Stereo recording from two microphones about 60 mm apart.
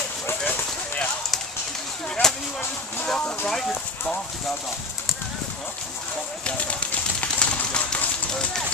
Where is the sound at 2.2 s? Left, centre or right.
Centre.